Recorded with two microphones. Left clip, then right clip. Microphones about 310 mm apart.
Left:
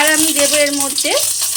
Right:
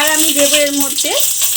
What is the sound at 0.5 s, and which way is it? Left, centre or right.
Speech, right.